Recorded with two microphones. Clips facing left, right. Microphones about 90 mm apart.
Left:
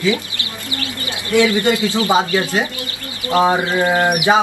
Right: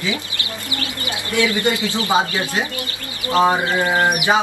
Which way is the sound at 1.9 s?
20° left (ahead or behind).